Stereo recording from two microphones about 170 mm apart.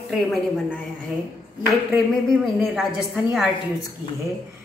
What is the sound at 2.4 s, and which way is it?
Speech, centre (ahead or behind).